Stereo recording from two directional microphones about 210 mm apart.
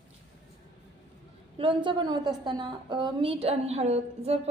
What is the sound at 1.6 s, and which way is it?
A woman's voice, 25° right (ahead or behind).